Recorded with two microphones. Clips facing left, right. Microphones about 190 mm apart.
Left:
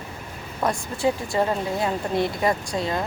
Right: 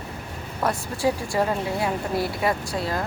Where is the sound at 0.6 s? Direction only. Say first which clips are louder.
Left 1 dB; 20° left (ahead or behind).